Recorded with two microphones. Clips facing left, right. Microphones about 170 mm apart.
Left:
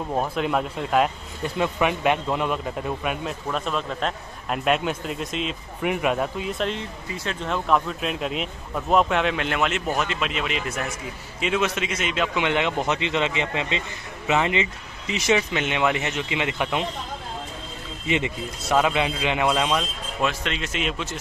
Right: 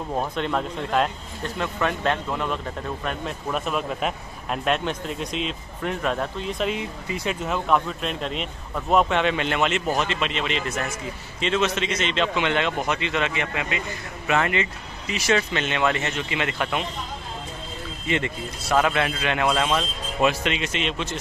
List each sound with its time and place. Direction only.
0.1 s a man's voice: 10° left (ahead or behind)
3.4 s speech: 5° right (ahead or behind)
4.6 s a man's voice: 5° left (ahead or behind)
6.7 s a man's voice: 15° right (ahead or behind); by 16.8 s 15° left (ahead or behind)
18.0 s a man's voice: 15° left (ahead or behind)
20.2 s speech: 5° right (ahead or behind)